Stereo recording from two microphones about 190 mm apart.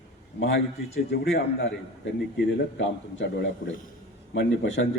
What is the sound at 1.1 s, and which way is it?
Speech, 65° left (ahead or behind).